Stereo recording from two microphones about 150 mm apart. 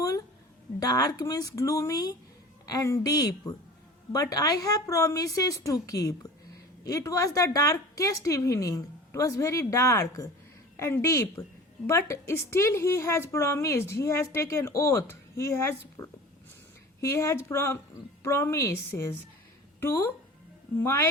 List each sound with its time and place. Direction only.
0.8 s a woman's voice: 25° left (ahead or behind)